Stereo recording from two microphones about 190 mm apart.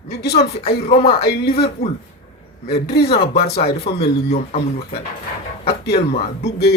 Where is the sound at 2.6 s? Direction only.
60° left (ahead or behind).